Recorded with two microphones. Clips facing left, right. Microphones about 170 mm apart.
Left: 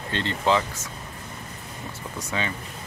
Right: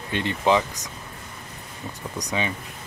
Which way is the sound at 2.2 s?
15° right (ahead or behind).